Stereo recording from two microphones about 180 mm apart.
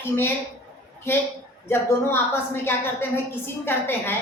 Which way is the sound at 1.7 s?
15° left (ahead or behind).